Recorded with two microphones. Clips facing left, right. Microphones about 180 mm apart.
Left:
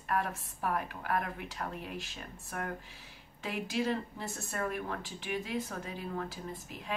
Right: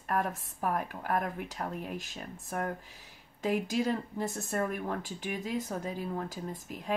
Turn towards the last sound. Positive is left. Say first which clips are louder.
# right 3 dB
turn(degrees=-45)  # may be behind; listen again after turning